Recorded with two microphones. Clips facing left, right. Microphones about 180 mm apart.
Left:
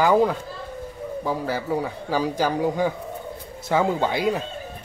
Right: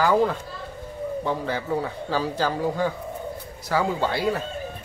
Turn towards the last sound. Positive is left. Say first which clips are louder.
# left 1 dB
turn(degrees=15)  # may be behind; listen again after turning